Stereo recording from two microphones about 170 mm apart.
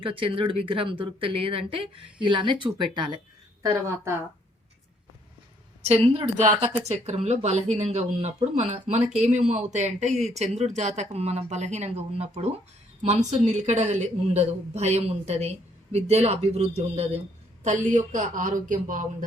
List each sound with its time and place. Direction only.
0.0 s speech: 30° right (ahead or behind)
5.9 s speech: 35° right (ahead or behind)